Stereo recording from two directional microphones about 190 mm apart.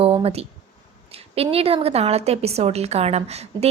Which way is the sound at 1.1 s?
30° right (ahead or behind).